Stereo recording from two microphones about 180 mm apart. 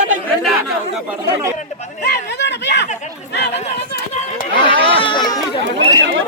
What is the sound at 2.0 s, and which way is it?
Speech, 70° left (ahead or behind).